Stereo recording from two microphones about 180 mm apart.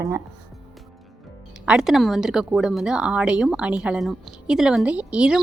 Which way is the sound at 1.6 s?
5° right (ahead or behind).